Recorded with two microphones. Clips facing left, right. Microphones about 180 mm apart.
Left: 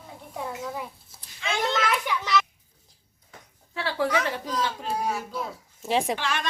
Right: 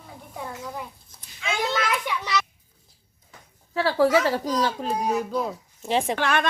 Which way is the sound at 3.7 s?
40° right (ahead or behind).